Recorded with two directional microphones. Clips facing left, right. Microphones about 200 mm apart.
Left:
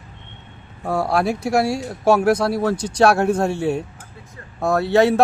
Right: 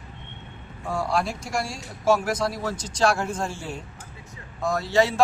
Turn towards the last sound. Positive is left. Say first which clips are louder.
# left 6 dB
turn(degrees=60)  # may be behind; listen again after turning